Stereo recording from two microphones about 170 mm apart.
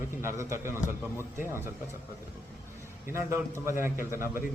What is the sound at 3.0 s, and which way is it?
A man's voice, 15° right (ahead or behind).